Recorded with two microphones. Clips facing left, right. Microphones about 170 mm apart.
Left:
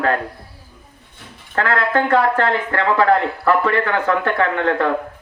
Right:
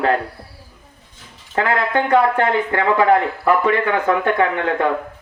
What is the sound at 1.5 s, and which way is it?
Speech, 20° right (ahead or behind).